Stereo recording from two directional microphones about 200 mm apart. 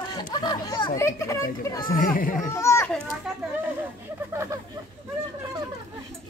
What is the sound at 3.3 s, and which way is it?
Speech, 5° right (ahead or behind).